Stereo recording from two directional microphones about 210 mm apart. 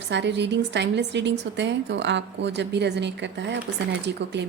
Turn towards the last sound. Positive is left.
turn(degrees=-55)  # may be behind; listen again after turning